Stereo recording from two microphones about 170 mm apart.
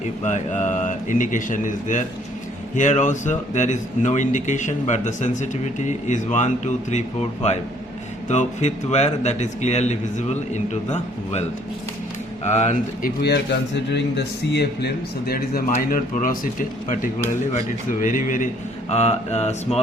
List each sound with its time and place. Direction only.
0.0 s speech: 45° left (ahead or behind)
12.5 s a man's voice: 45° left (ahead or behind); by 14.0 s 85° left
14.5 s a man's voice: 75° left (ahead or behind); by 18.4 s 50° left (ahead or behind)
18.9 s mantra: 40° left (ahead or behind)